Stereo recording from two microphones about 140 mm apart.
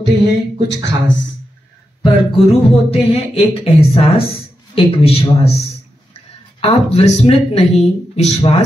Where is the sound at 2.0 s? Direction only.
45° left (ahead or behind).